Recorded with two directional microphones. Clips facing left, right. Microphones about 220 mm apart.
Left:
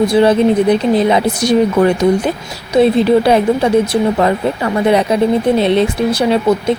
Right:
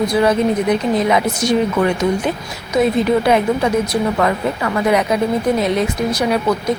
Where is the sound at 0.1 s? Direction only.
30° left (ahead or behind).